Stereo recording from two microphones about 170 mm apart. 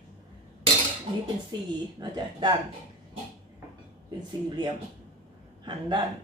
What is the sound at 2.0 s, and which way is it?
Speech, 25° right (ahead or behind).